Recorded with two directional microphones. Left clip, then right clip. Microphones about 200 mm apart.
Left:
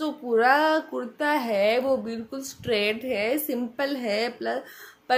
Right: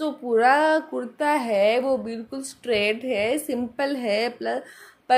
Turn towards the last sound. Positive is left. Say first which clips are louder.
# right 2 dB
turn(degrees=-10)  # may be behind; listen again after turning